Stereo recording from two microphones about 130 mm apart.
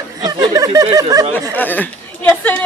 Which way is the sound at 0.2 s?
25° right (ahead or behind).